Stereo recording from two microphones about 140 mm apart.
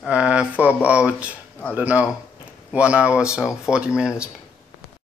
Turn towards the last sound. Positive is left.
turn(degrees=-5)  # may be behind; listen again after turning